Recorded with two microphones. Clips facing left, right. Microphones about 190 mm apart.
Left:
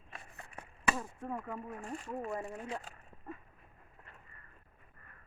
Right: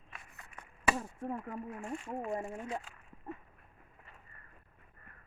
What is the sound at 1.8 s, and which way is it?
Speech, 40° left (ahead or behind).